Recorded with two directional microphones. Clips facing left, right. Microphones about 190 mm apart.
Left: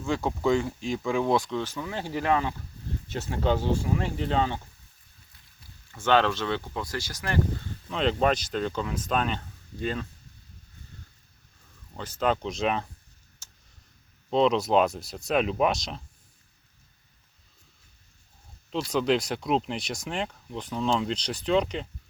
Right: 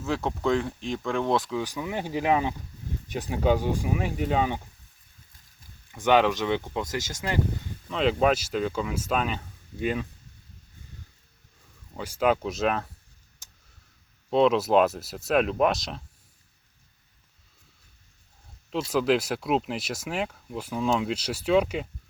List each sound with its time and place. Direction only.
0.0 s speech: centre (ahead or behind)
5.9 s speech: 15° right (ahead or behind)
7.9 s speech: 5° right (ahead or behind)
11.9 s speech: 10° right (ahead or behind)
13.4 s tick: 15° right (ahead or behind)
14.3 s speech: 5° right (ahead or behind)
18.9 s speech: 5° right (ahead or behind)